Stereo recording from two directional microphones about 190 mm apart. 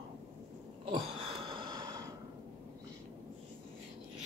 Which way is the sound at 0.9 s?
25° right (ahead or behind).